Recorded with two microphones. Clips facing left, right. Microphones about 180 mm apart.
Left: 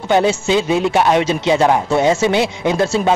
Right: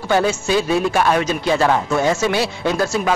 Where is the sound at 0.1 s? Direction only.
20° left (ahead or behind).